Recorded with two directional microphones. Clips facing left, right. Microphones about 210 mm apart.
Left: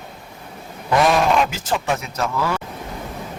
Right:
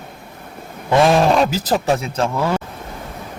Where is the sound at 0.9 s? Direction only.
30° right (ahead or behind).